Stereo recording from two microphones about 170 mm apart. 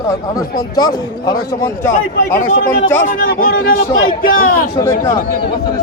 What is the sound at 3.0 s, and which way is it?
A man's voice, 55° left (ahead or behind).